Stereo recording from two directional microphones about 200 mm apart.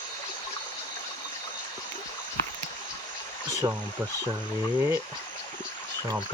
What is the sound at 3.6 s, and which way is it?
Speech, 15° right (ahead or behind).